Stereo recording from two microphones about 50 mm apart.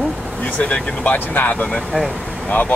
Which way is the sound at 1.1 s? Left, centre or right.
Left.